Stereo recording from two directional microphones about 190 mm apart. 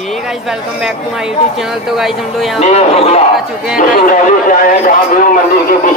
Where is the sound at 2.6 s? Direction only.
35° left (ahead or behind).